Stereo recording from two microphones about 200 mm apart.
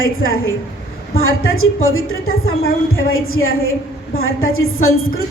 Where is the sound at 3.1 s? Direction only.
90° left.